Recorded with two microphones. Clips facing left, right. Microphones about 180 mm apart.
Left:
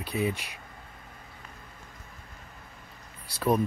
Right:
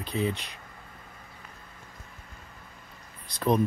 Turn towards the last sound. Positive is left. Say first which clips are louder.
# right 1 dB
turn(degrees=10)  # may be behind; listen again after turning